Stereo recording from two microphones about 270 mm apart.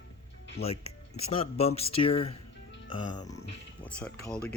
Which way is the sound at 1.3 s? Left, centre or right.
Left.